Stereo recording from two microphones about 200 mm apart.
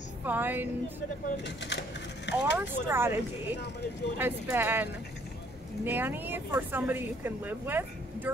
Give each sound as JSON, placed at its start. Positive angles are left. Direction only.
{"t": 0.2, "sound": "speech", "side_deg": -10}
{"t": 1.3, "sound": "speech", "side_deg": 60}
{"t": 2.5, "sound": "speech", "side_deg": -10}
{"t": 5.9, "sound": "speech", "side_deg": -10}